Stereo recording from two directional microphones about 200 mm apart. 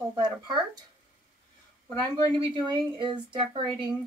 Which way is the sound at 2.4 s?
20° right (ahead or behind).